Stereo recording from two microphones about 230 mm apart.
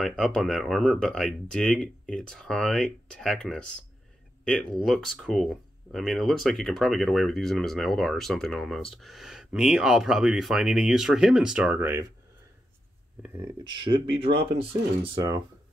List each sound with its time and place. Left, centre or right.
0.0 s speech: centre
13.7 s speech: centre